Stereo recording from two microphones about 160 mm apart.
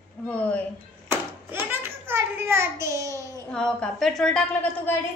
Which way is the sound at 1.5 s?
15° right (ahead or behind).